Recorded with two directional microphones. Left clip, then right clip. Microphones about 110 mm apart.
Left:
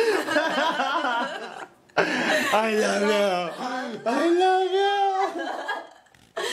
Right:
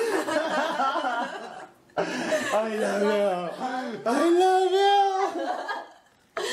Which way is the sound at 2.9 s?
35° left (ahead or behind).